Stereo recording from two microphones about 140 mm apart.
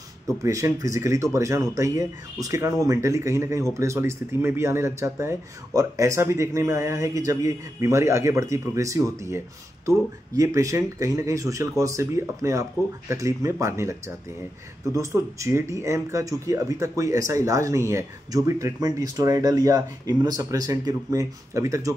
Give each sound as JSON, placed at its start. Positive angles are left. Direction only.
{"t": 0.3, "sound": "speech", "side_deg": -20}